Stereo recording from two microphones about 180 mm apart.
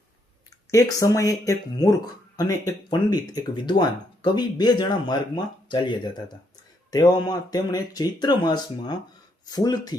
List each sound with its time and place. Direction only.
0.7 s speech: 15° left (ahead or behind)